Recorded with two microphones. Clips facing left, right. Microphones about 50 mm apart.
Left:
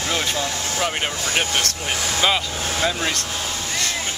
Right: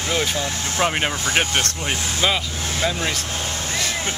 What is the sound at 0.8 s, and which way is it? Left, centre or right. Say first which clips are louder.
Speech: right 4 dB; right.